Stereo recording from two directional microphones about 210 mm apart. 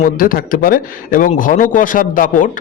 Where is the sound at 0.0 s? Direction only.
40° left (ahead or behind).